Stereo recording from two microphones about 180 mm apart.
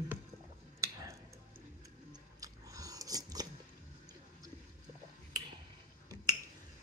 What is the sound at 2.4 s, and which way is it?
Biting, 20° right (ahead or behind).